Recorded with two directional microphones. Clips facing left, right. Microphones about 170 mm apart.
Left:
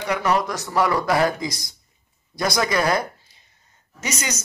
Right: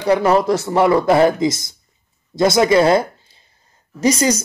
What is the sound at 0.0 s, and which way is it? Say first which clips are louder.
A man's voice: right 7 dB; 30° right (ahead or behind).